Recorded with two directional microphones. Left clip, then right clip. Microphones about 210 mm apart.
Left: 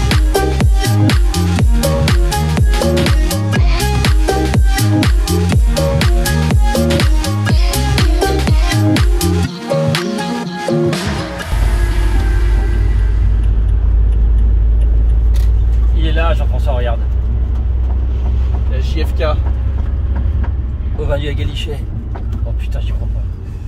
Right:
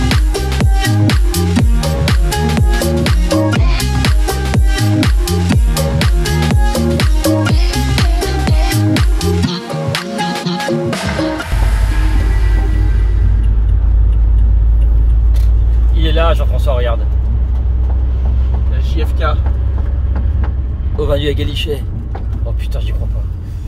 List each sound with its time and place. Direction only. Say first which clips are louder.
0.1 s music: left 3 dB; centre (ahead or behind)
16.0 s vehicle: right 4 dB; 50° right (ahead or behind)
21.0 s vehicle: right 5 dB; 45° right (ahead or behind)